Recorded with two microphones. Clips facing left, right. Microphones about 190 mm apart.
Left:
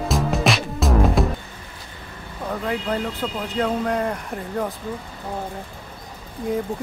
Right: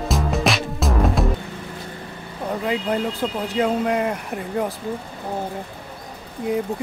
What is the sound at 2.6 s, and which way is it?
Speech, 10° right (ahead or behind).